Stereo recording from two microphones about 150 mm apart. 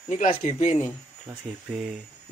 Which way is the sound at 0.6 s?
45° left (ahead or behind).